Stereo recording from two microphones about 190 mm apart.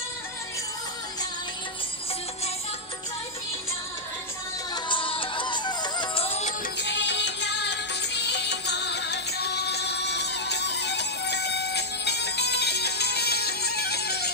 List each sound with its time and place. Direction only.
4.8 s music: 25° left (ahead or behind)
6.8 s music: 65° left (ahead or behind)